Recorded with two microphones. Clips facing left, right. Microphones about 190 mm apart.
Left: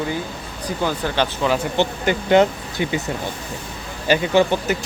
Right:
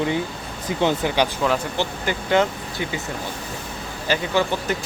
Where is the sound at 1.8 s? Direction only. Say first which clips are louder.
Left 5 dB; 20° left (ahead or behind).